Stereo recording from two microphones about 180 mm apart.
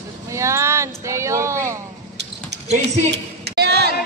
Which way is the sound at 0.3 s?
15° right (ahead or behind).